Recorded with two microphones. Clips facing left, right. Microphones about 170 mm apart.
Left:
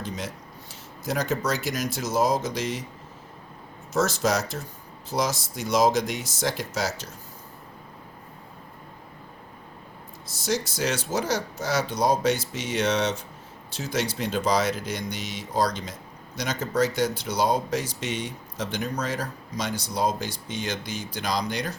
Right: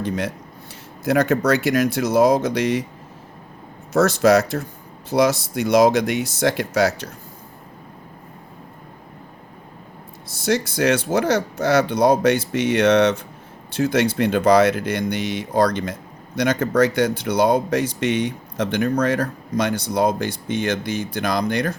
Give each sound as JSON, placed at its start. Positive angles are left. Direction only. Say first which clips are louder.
{"t": 0.0, "sound": "speech", "louder": "right 9 dB", "side_deg": -60}
{"t": 3.9, "sound": "speech", "louder": "right 9 dB", "side_deg": -60}
{"t": 10.2, "sound": "speech", "louder": "right 6 dB", "side_deg": -60}